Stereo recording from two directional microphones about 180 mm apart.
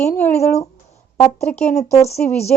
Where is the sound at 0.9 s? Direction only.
35° left (ahead or behind).